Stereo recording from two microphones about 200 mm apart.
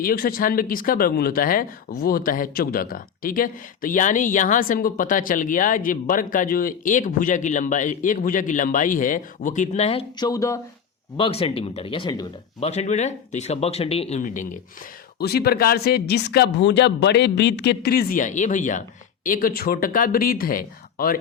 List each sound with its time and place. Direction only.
0.0 s speech: 45° left (ahead or behind); by 10.6 s 15° left (ahead or behind)
11.2 s speech: 30° left (ahead or behind)
12.5 s speech: 35° left (ahead or behind)
15.2 s speech: 50° left (ahead or behind)